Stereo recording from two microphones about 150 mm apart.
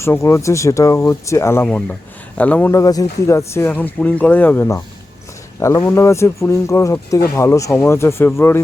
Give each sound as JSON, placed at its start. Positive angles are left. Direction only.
{"t": 0.0, "sound": "speech", "side_deg": 20}